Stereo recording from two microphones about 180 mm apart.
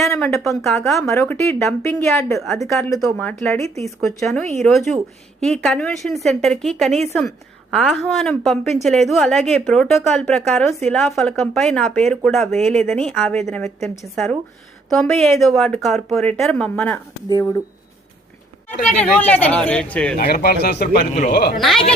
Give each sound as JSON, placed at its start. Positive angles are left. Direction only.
{"t": 0.1, "sound": "speech", "side_deg": 15}
{"t": 0.6, "sound": "a woman's voice", "side_deg": 0}
{"t": 0.9, "sound": "speech", "side_deg": 15}
{"t": 2.6, "sound": "a woman's voice", "side_deg": 0}
{"t": 4.2, "sound": "a woman's voice", "side_deg": 0}
{"t": 13.2, "sound": "speech", "side_deg": 10}
{"t": 14.0, "sound": "a woman's voice", "side_deg": 0}
{"t": 18.9, "sound": "speech", "side_deg": 10}
{"t": 20.1, "sound": "speech", "side_deg": 60}
{"t": 21.1, "sound": "speech", "side_deg": 40}
{"t": 21.3, "sound": "speech", "side_deg": 60}
{"t": 21.6, "sound": "a woman's voice", "side_deg": 0}